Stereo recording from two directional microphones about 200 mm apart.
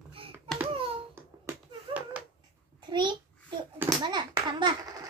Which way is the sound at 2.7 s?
20° right (ahead or behind).